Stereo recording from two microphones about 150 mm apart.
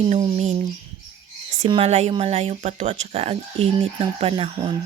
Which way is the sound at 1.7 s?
45° right (ahead or behind).